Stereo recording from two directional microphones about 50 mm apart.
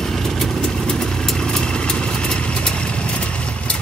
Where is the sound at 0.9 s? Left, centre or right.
Centre.